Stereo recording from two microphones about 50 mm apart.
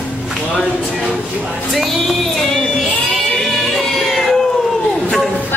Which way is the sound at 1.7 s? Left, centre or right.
Centre.